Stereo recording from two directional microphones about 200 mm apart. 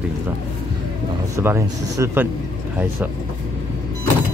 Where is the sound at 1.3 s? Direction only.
15° right (ahead or behind).